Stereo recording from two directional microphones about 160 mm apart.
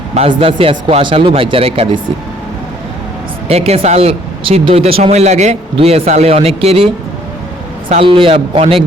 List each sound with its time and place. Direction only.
0.1 s a man's voice: 40° right (ahead or behind)
3.5 s a man's voice: 40° right (ahead or behind)